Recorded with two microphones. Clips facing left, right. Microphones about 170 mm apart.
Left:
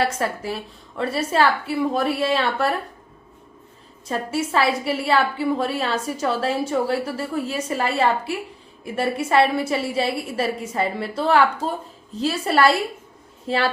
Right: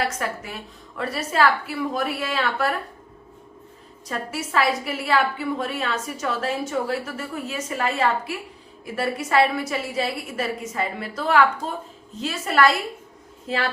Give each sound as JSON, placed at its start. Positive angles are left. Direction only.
{"t": 0.1, "sound": "a woman's voice", "side_deg": 30}
{"t": 4.1, "sound": "a woman's voice", "side_deg": 30}